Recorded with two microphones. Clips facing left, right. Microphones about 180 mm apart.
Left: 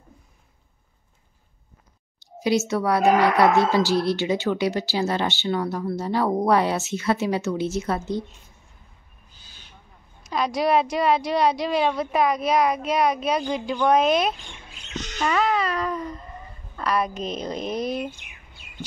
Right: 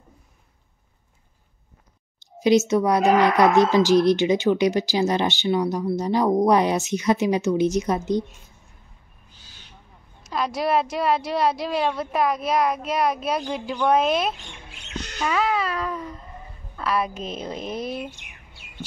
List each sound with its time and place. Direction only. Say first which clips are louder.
2.1 s speech: right 4 dB; 20° right (ahead or behind)
10.3 s a woman's voice: left 2 dB; centre (ahead or behind)
14.9 s a sound: left 1 dB; 10° right (ahead or behind)
16.7 s a woman's voice: even; 5° right (ahead or behind)